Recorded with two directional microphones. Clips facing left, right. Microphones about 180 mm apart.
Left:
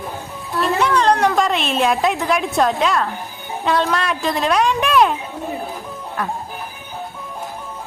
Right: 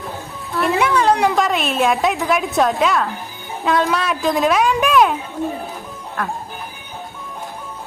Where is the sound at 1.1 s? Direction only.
15° right (ahead or behind).